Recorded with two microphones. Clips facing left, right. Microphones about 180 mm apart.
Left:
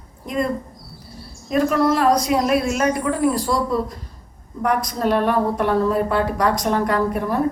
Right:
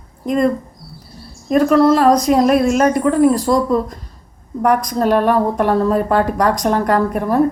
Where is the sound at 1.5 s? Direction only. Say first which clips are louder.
Right 6 dB; 45° right (ahead or behind).